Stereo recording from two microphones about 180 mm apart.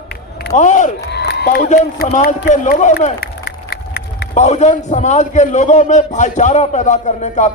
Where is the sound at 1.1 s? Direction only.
65° left (ahead or behind).